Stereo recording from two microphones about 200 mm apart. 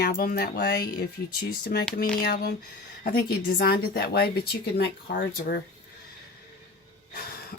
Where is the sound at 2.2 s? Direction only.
50° left (ahead or behind).